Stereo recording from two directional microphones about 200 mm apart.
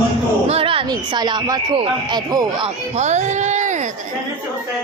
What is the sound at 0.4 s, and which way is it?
Speech, 30° right (ahead or behind).